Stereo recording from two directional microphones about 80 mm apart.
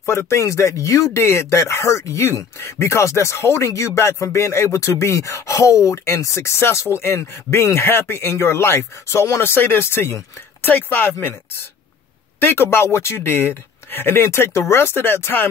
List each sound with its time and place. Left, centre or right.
0.0 s speech: left